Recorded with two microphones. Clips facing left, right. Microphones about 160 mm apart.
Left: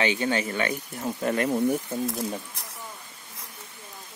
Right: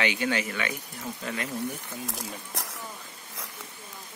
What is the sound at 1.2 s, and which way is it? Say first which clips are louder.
Speech: left 10 dB; 50° left (ahead or behind).